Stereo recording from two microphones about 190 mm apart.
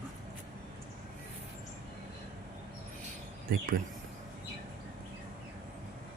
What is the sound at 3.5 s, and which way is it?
Speech, 50° right (ahead or behind).